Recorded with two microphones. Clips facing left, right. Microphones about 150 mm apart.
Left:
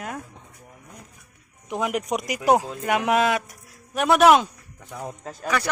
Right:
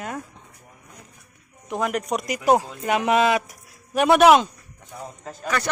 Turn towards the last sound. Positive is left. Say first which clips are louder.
# even
turn(degrees=5)  # may be behind; listen again after turning